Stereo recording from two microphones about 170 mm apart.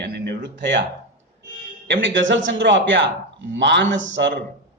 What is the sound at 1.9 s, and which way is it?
A man's voice, 90° right.